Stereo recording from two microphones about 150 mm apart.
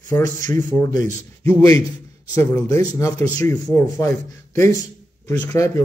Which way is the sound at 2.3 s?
15° left (ahead or behind).